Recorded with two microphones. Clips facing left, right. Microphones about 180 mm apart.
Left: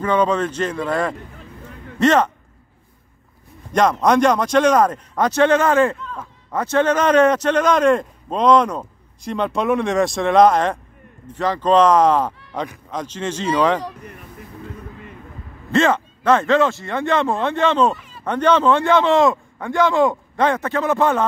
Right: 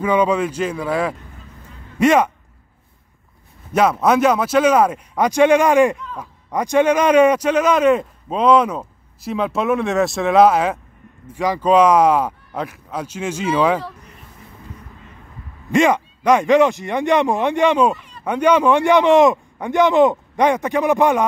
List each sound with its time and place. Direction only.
0.0 s speech: 10° right (ahead or behind)
1.6 s a sound: 10° right (ahead or behind)
3.7 s speech: 5° right (ahead or behind)
15.7 s speech: 15° right (ahead or behind)
17.9 s a sound: centre (ahead or behind)
18.2 s speech: 10° right (ahead or behind)